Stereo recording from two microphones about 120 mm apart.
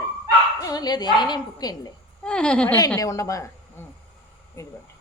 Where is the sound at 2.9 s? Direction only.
25° left (ahead or behind).